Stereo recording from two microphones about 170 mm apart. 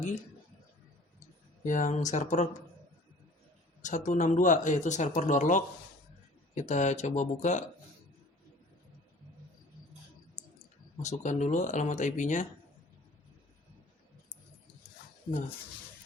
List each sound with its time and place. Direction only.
1.6 s speech: 50° left (ahead or behind)
3.8 s speech: 45° left (ahead or behind)
11.0 s speech: 45° left (ahead or behind)